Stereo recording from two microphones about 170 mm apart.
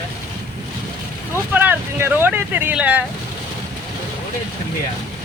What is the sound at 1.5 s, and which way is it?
Speech, 10° right (ahead or behind).